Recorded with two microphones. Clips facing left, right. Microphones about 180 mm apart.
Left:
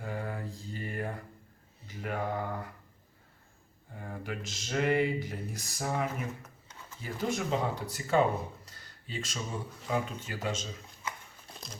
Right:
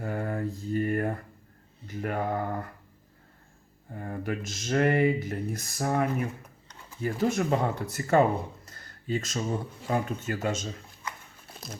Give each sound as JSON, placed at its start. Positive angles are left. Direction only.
{"t": 0.0, "sound": "mantra", "side_deg": -50}
{"t": 1.9, "sound": "a sound", "side_deg": -50}
{"t": 3.9, "sound": "speech", "side_deg": -50}